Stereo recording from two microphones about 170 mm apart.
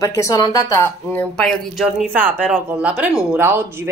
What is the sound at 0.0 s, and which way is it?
A woman's voice, 20° left (ahead or behind).